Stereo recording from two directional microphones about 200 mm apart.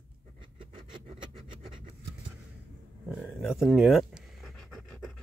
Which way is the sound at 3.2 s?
Centre (ahead or behind).